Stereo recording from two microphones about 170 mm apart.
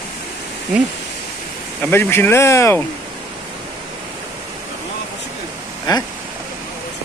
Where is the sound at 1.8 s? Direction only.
15° left (ahead or behind).